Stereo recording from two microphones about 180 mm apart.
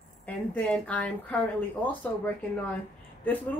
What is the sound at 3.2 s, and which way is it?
Speech, 10° left (ahead or behind).